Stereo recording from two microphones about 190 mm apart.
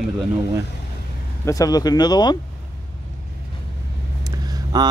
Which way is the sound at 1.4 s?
20° left (ahead or behind).